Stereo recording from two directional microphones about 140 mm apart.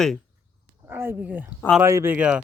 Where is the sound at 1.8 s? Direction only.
15° right (ahead or behind).